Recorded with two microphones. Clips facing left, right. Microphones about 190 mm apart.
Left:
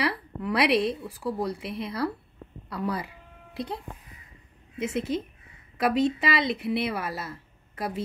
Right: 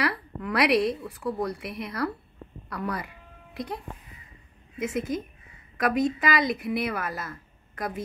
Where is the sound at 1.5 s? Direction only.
30° left (ahead or behind).